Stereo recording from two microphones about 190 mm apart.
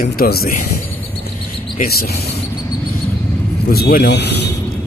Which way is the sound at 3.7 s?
55° left (ahead or behind).